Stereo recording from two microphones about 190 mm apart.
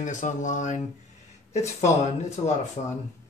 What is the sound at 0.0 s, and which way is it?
Speech, 40° left (ahead or behind).